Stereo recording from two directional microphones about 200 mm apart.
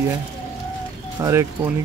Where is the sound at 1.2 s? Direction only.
15° right (ahead or behind).